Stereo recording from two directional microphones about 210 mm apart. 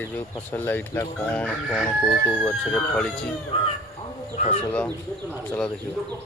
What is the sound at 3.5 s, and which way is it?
Speech, 25° left (ahead or behind).